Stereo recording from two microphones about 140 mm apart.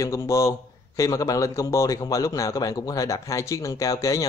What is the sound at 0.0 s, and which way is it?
Speech, 20° left (ahead or behind).